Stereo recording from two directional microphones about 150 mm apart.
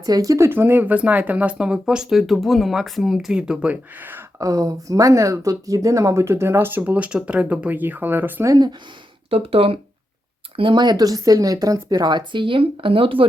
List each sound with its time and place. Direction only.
0.0 s speech: 25° right (ahead or behind)
9.3 s speech: 40° right (ahead or behind)